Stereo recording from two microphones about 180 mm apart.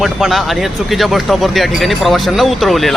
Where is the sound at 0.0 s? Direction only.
Centre (ahead or behind).